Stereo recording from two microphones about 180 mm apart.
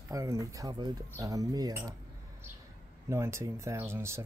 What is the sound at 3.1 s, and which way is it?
Speech, 15° right (ahead or behind).